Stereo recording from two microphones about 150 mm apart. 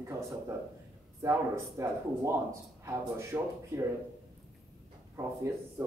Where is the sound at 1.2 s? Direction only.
20° right (ahead or behind).